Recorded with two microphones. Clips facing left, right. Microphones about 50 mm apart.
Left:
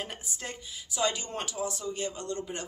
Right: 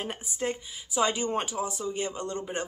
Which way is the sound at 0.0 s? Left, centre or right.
Centre.